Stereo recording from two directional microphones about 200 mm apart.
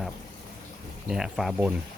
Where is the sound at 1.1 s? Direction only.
5° right (ahead or behind).